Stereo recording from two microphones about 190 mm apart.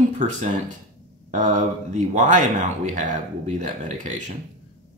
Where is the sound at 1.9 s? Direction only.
40° right (ahead or behind).